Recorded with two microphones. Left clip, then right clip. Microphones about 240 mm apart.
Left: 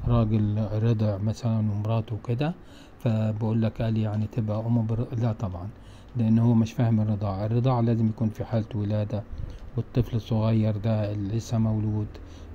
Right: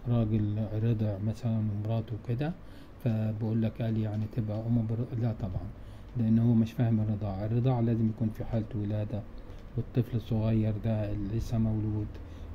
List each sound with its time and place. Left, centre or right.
0.1 s a man's voice: left